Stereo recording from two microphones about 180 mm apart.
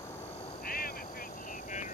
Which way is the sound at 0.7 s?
55° left (ahead or behind).